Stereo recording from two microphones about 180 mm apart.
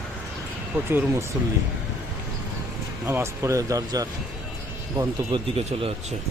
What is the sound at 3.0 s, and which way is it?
Speech, 15° right (ahead or behind).